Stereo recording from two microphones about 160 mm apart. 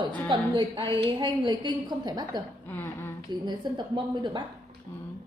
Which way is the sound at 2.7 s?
15° left (ahead or behind).